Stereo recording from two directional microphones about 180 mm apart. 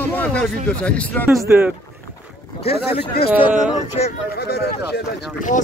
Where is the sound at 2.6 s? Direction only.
35° left (ahead or behind).